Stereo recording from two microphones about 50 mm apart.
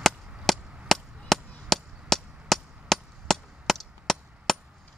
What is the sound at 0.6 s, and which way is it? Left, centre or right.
Chop, centre.